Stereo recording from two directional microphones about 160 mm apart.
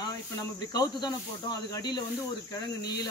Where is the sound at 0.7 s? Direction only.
25° left (ahead or behind).